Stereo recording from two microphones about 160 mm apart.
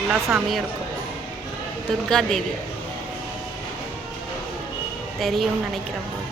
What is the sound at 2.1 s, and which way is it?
Speech, 5° left (ahead or behind).